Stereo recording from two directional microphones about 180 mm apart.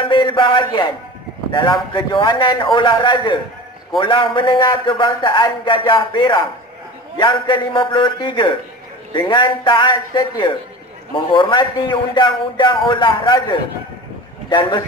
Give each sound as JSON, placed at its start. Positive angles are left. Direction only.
{"t": 0.0, "sound": "a man's voice", "side_deg": 25}